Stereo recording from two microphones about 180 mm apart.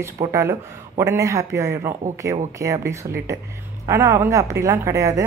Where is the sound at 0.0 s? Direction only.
15° right (ahead or behind).